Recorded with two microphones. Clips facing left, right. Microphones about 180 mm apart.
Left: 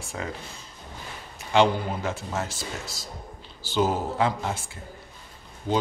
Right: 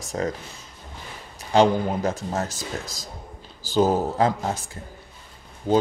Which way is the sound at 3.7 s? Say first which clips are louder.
Right 4 dB; 40° right (ahead or behind).